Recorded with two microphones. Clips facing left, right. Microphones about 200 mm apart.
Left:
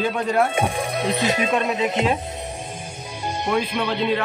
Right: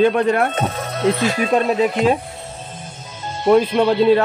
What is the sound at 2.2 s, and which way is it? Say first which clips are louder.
Music: left 2 dB; 20° left (ahead or behind).